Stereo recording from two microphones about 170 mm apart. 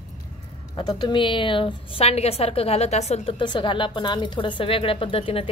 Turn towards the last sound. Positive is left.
turn(degrees=35)  # may be behind; listen again after turning